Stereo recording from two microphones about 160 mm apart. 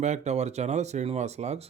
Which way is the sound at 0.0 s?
45° right (ahead or behind).